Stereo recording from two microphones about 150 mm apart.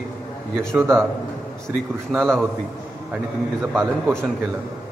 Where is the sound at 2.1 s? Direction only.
Centre (ahead or behind).